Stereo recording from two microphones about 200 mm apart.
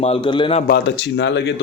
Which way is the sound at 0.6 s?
55° left (ahead or behind).